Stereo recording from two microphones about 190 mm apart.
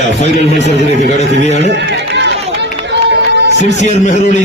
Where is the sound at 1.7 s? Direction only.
65° right (ahead or behind).